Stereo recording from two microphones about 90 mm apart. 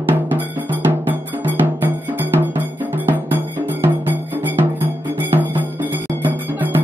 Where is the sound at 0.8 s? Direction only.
20° right (ahead or behind).